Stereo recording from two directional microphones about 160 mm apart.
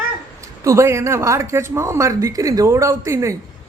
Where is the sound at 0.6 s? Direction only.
20° right (ahead or behind).